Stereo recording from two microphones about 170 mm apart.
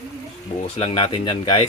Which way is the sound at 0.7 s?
35° left (ahead or behind).